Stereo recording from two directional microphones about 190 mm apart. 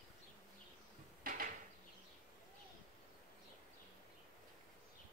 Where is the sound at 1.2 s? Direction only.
45° right (ahead or behind).